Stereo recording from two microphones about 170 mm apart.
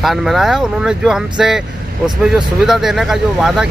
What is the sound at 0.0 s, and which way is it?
Speech, centre (ahead or behind).